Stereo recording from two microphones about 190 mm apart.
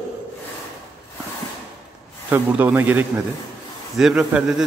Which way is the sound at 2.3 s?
10° right (ahead or behind).